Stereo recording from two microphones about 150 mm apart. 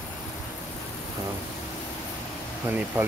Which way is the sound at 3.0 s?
15° right (ahead or behind).